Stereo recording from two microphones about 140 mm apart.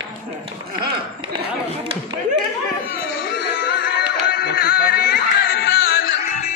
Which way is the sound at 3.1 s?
90° left.